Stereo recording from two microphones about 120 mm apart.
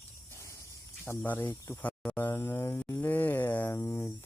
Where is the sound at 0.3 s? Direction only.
25° left (ahead or behind).